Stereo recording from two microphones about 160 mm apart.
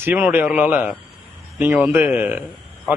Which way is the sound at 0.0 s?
10° right (ahead or behind).